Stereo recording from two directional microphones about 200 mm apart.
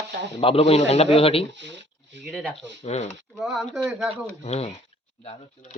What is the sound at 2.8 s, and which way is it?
Speech, 30° left (ahead or behind).